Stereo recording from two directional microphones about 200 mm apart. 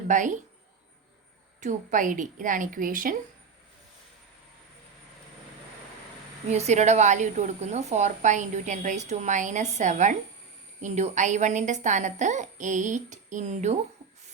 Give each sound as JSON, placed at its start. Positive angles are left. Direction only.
{"t": 0.1, "sound": "a woman's voice", "side_deg": -40}
{"t": 1.6, "sound": "a woman's voice", "side_deg": -40}
{"t": 6.5, "sound": "a woman's voice", "side_deg": -35}